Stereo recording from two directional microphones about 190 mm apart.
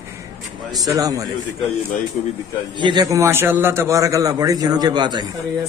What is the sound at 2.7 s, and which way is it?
A man's voice, 25° right (ahead or behind).